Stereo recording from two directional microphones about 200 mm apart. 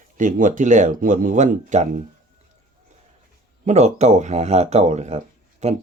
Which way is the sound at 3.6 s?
35° right (ahead or behind).